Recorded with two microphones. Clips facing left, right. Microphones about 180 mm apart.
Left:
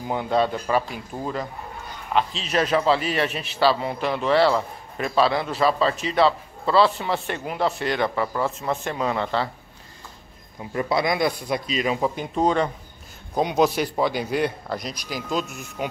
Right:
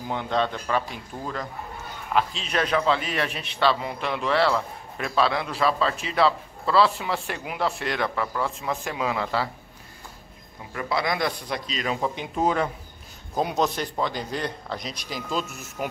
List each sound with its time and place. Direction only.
0.1 s a man's voice: 10° left (ahead or behind)
10.7 s speech: 25° left (ahead or behind); by 12.1 s 10° left (ahead or behind)
12.4 s a man's voice: 5° right (ahead or behind)
13.7 s a man's voice: 10° left (ahead or behind)